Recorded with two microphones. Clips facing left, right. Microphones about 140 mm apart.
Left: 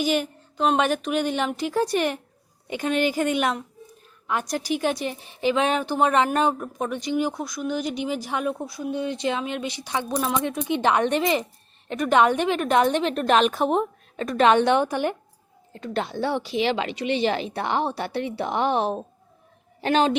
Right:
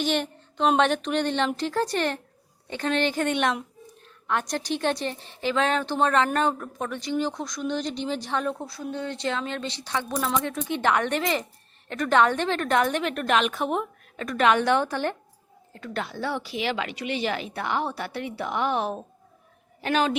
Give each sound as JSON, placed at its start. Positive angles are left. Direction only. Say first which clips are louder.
{"t": 0.0, "sound": "a woman's voice", "louder": "left 2 dB", "side_deg": 5}